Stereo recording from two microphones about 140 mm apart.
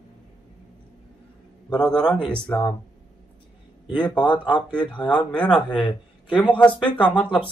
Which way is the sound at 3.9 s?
35° left (ahead or behind).